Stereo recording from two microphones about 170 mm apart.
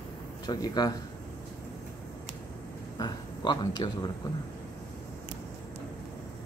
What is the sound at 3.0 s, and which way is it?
Speech, 25° left (ahead or behind).